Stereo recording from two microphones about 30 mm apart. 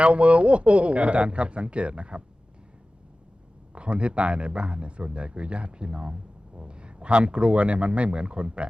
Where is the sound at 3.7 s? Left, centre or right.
Right.